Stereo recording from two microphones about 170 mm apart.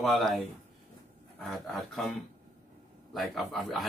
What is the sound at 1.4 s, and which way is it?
Speech, centre (ahead or behind).